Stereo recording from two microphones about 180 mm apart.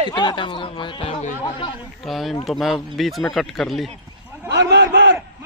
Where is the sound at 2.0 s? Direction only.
Centre (ahead or behind).